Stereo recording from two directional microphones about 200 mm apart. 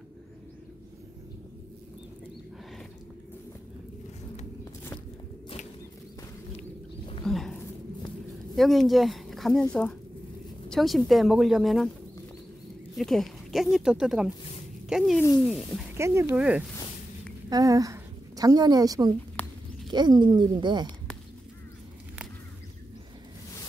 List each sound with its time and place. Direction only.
7.2 s a sound: 5° left (ahead or behind)
8.5 s speech: centre (ahead or behind)
12.9 s speech: centre (ahead or behind)
16.0 s speech: 10° right (ahead or behind)
17.5 s a woman's voice: 20° right (ahead or behind)
19.4 s a sound: 10° left (ahead or behind)
19.9 s speech: 20° right (ahead or behind)